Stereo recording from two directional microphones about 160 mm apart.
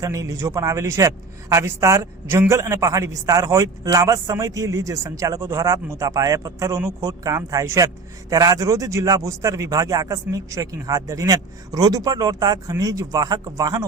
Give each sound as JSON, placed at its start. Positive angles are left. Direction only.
{"t": 0.0, "sound": "a man's voice", "side_deg": -20}